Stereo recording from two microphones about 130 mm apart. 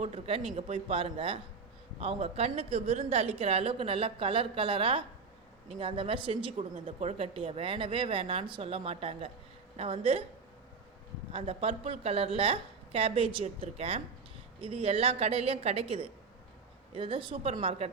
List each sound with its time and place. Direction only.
0.0 s a woman's voice: 45° right (ahead or behind)
11.3 s a woman's voice: 45° right (ahead or behind)